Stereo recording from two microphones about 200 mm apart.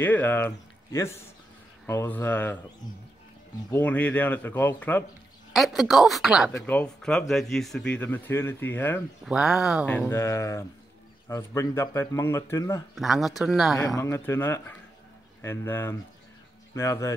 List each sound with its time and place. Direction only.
0.0 s speech: 10° left (ahead or behind)
3.7 s speech: 10° left (ahead or behind)
6.5 s speech: 10° left (ahead or behind)
9.2 s speech: centre (ahead or behind); by 12.8 s 15° left (ahead or behind)
12.9 s speech: centre (ahead or behind)
13.8 s speech: 15° left (ahead or behind)